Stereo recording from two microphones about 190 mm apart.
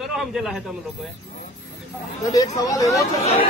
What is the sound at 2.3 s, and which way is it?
Speech, 20° left (ahead or behind).